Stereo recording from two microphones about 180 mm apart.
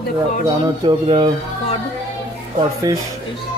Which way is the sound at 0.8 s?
30° right (ahead or behind).